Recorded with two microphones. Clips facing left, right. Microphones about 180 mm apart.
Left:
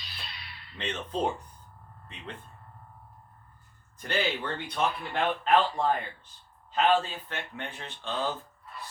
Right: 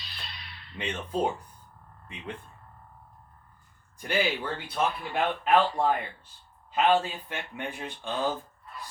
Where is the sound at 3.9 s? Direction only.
10° right (ahead or behind).